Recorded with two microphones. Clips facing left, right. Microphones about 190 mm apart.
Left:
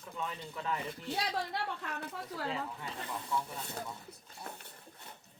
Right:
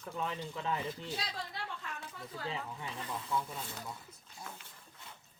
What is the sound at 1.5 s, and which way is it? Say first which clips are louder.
Speech: left 5 dB; 65° left (ahead or behind).